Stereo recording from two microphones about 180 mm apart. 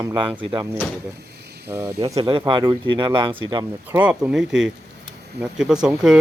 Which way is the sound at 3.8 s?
5° right (ahead or behind).